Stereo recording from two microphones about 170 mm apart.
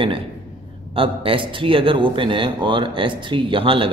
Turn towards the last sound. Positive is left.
turn(degrees=-30)  # may be behind; listen again after turning